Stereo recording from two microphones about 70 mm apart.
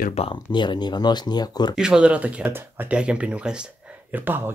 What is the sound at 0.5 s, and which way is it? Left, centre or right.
Speech, left.